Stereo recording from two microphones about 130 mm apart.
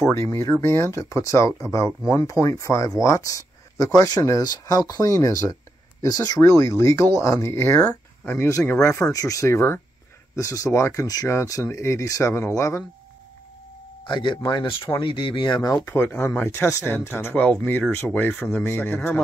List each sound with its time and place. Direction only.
0.1 s speech: 20° left (ahead or behind)
14.0 s speech: 40° left (ahead or behind)
15.8 s speech: 15° left (ahead or behind)